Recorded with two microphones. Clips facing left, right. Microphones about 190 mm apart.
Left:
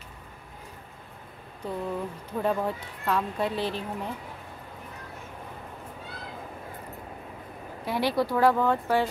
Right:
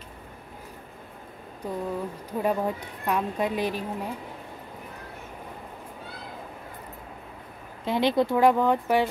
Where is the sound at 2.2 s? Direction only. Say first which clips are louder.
Right 1 dB; 10° right (ahead or behind).